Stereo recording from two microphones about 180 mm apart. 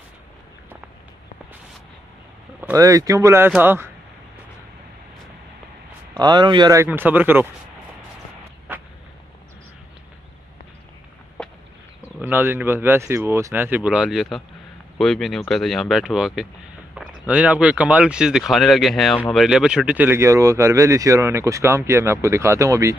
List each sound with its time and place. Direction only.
2.7 s speech: 20° right (ahead or behind)
6.1 s speech: 25° right (ahead or behind)
11.4 s a sound: 5° left (ahead or behind)
12.2 s speech: 10° right (ahead or behind)